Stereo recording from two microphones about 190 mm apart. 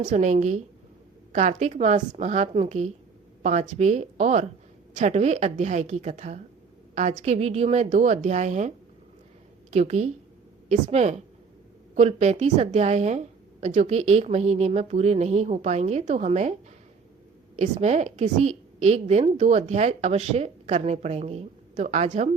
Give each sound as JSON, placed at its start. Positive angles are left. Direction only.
{"t": 0.0, "sound": "a woman's voice", "side_deg": -40}
{"t": 9.7, "sound": "a woman's voice", "side_deg": -35}
{"t": 17.6, "sound": "a woman's voice", "side_deg": -35}